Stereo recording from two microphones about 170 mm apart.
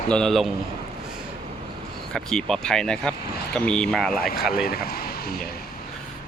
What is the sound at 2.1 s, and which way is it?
Speech, 5° left (ahead or behind).